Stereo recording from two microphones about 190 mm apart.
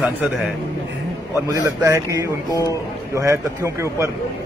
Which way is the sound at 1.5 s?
20° right (ahead or behind).